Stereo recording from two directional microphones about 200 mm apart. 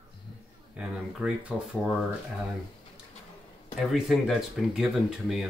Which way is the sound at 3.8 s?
Centre (ahead or behind).